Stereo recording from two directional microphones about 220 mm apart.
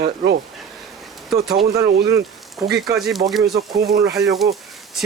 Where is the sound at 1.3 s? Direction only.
Centre (ahead or behind).